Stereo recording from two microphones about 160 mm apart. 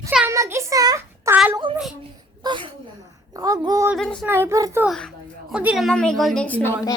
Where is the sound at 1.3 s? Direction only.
10° right (ahead or behind).